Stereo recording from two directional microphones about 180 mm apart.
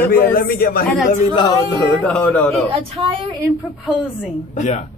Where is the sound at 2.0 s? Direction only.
5° left (ahead or behind).